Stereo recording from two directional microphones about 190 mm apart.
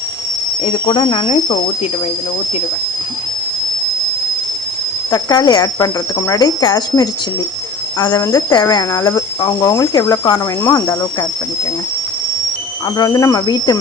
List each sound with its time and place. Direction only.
0.9 s speech: 25° left (ahead or behind)
5.1 s speech: 20° left (ahead or behind)
13.0 s speech: 20° left (ahead or behind)